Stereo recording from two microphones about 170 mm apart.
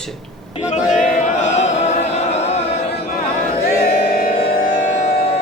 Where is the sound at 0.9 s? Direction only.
45° left (ahead or behind).